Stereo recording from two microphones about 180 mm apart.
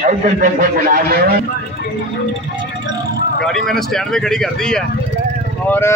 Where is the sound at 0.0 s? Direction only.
45° right (ahead or behind).